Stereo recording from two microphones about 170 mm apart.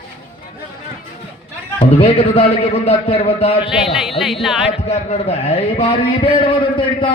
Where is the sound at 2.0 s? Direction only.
35° left (ahead or behind).